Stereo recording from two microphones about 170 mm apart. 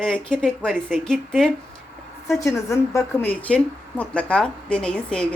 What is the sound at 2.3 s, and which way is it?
A woman's voice, 20° left (ahead or behind).